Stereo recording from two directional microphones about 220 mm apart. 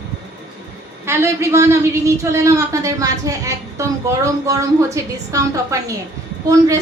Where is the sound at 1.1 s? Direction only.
10° right (ahead or behind).